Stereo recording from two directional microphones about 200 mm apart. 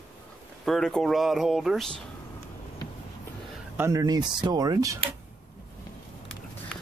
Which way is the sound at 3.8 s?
20° right (ahead or behind).